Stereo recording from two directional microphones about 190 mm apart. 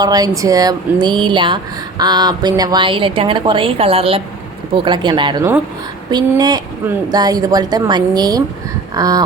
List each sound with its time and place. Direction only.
0.0 s speech: 20° right (ahead or behind)